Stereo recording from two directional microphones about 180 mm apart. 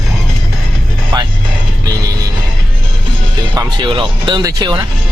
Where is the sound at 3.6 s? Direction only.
25° right (ahead or behind).